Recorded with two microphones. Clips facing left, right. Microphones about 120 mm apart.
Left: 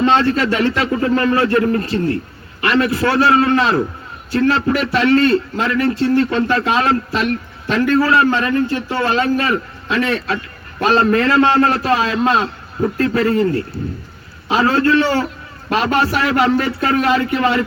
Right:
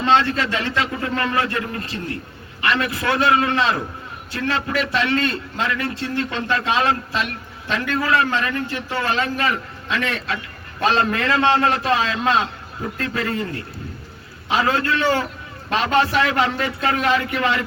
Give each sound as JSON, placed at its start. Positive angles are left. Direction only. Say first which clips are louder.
{"t": 0.0, "sound": "a man's voice", "louder": "left 4 dB", "side_deg": 35}
{"t": 16.4, "sound": "a man's voice", "louder": "left 5 dB", "side_deg": 35}